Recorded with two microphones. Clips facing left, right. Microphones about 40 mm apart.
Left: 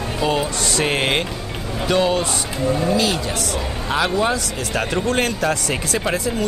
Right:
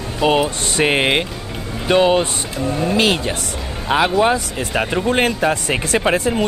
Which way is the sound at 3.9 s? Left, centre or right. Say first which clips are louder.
Right 5 dB; right.